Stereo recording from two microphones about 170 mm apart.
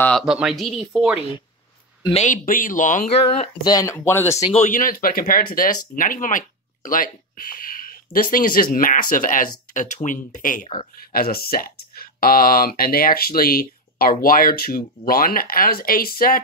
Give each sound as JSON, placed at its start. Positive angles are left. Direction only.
{"t": 0.0, "sound": "speech", "side_deg": 0}
{"t": 2.0, "sound": "speech", "side_deg": 40}
{"t": 3.6, "sound": "speech", "side_deg": 20}
{"t": 4.5, "sound": "speech", "side_deg": 45}